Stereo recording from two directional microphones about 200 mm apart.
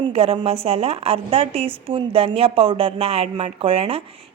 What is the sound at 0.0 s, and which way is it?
A woman's voice, 30° right (ahead or behind).